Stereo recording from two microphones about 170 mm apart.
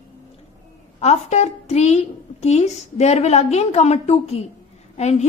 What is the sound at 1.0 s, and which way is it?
A woman's voice, 40° left (ahead or behind).